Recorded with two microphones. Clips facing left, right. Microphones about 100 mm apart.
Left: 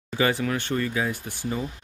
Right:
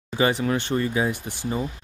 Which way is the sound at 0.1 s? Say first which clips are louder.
Right 2 dB; 25° right (ahead or behind).